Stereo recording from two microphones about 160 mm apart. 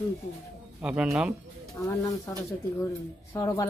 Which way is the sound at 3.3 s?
20° left (ahead or behind).